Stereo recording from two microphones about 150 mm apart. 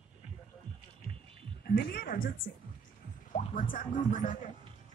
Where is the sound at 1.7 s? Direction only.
90° left.